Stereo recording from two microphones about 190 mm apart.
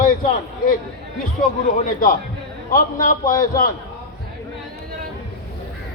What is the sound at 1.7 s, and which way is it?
A man's voice, 45° left (ahead or behind).